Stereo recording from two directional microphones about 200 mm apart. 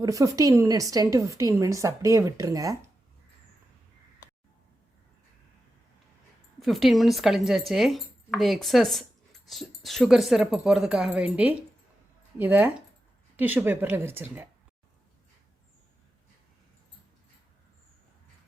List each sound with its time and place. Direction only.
0.0 s a woman's voice: 15° right (ahead or behind)
6.6 s a woman's voice: centre (ahead or behind)